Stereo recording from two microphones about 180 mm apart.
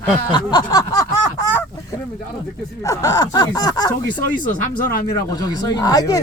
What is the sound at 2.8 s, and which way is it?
Speech, 20° left (ahead or behind).